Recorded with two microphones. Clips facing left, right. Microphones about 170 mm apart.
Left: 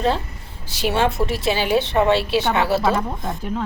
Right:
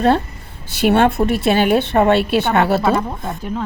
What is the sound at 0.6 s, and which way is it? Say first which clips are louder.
A woman's voice: right 6 dB; 60° right (ahead or behind).